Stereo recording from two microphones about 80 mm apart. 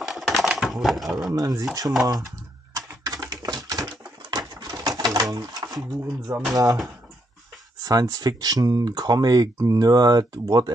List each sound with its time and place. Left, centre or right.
0.0 s typewriter: centre
1.3 s speech: right
2.7 s typewriter: right
3.9 s pigeon: right
5.3 s speech: right
7.8 s speech: right